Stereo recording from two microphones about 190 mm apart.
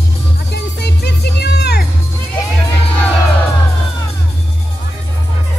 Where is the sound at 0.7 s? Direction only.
60° left (ahead or behind).